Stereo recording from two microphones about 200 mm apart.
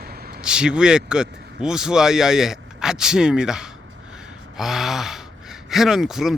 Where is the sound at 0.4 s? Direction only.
5° right (ahead or behind).